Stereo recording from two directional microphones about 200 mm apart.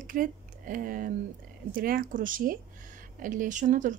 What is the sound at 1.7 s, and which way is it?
Speech, 45° right (ahead or behind).